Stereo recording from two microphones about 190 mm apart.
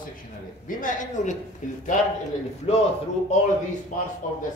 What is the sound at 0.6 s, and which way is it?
Speech, 45° left (ahead or behind).